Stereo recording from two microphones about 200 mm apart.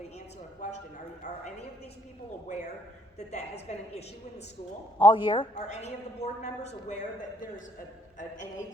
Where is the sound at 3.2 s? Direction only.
35° left (ahead or behind).